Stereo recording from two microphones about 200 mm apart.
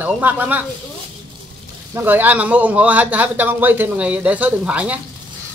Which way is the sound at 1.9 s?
10° right (ahead or behind).